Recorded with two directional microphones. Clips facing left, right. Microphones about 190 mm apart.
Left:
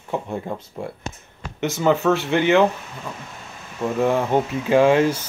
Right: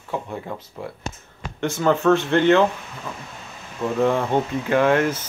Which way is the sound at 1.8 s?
15° left (ahead or behind).